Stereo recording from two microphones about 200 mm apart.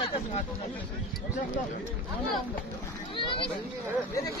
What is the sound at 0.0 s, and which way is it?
Speech, 30° left (ahead or behind).